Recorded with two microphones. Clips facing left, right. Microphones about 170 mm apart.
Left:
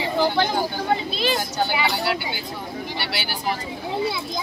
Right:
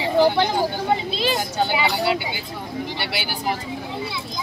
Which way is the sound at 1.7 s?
20° right (ahead or behind).